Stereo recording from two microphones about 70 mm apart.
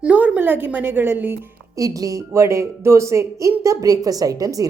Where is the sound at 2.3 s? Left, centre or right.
Right.